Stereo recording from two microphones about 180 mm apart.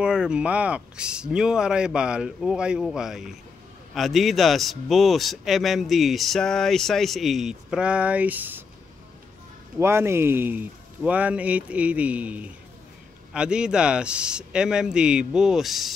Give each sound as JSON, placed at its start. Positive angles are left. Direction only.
{"t": 0.0, "sound": "a man's voice", "side_deg": -5}
{"t": 9.8, "sound": "a man's voice", "side_deg": -15}